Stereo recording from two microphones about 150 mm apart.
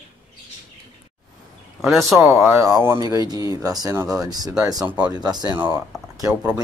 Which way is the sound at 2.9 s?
25° right (ahead or behind).